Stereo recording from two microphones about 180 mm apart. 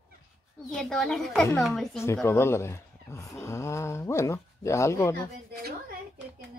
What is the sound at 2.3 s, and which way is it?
Speech, 15° left (ahead or behind).